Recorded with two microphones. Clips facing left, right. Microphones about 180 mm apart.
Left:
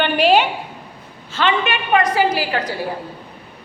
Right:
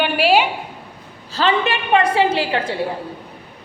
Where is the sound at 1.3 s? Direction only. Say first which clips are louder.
Right 1 dB; 35° right (ahead or behind).